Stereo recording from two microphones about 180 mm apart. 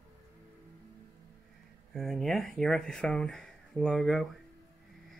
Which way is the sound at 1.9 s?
Centre (ahead or behind).